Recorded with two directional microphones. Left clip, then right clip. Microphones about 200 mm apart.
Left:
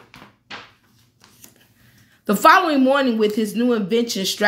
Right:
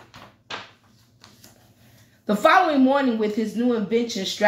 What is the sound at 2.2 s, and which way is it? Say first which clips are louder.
A woman's voice: left 3 dB; 45° left (ahead or behind).